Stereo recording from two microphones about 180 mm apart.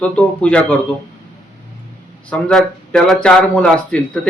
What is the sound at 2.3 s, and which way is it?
Speech, 5° left (ahead or behind).